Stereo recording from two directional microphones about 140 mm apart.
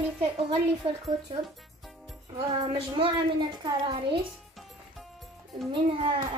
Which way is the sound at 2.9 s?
35° right (ahead or behind).